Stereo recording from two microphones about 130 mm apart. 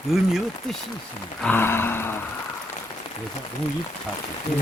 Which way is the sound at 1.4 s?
15° left (ahead or behind).